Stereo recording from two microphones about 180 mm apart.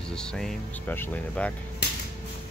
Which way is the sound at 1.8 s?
65° left (ahead or behind).